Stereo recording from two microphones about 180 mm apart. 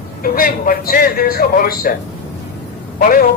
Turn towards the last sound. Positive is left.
turn(degrees=50)  # may be behind; listen again after turning